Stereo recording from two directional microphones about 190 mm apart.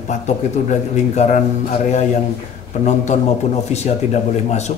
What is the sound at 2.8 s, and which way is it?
Speech, 40° left (ahead or behind).